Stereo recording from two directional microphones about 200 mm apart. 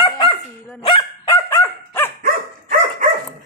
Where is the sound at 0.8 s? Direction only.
20° left (ahead or behind).